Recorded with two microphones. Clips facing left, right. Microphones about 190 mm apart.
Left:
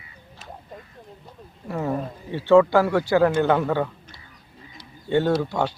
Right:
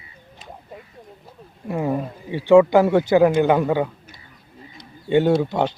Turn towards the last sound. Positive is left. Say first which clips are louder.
# right 4 dB
turn(degrees=-20)  # may be behind; listen again after turning